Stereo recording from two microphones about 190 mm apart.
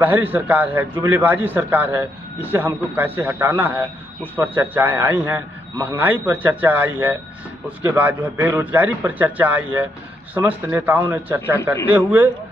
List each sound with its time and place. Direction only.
0.0 s a man's voice: 10° right (ahead or behind)